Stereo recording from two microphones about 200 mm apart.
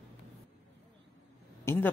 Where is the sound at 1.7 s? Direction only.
10° left (ahead or behind).